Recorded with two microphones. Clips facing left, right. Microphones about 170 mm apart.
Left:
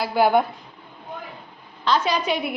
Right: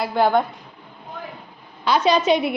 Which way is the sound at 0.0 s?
5° left (ahead or behind).